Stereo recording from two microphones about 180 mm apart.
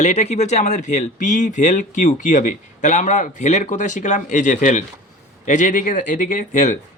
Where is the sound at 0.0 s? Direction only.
40° left (ahead or behind).